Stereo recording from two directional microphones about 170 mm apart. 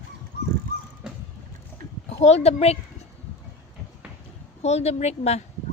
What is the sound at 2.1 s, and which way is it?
Speech, 40° left (ahead or behind).